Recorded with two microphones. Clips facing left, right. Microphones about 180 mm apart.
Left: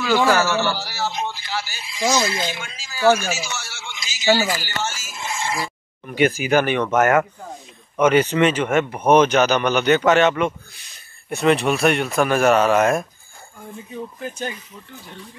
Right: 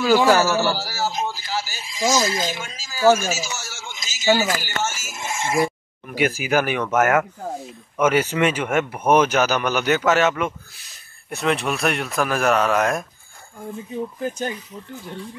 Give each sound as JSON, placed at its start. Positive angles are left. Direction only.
{"t": 0.2, "sound": "a man's voice", "side_deg": -15}
{"t": 0.7, "sound": "speech", "side_deg": -40}
{"t": 3.5, "sound": "a sound", "side_deg": -40}
{"t": 5.3, "sound": "speech", "side_deg": -50}
{"t": 6.0, "sound": "speech", "side_deg": -5}